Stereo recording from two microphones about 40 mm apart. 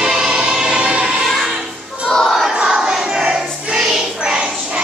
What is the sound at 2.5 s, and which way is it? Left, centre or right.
Choir, centre.